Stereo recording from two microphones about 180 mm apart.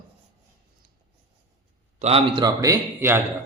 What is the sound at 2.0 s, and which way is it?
A man's voice, 35° right (ahead or behind).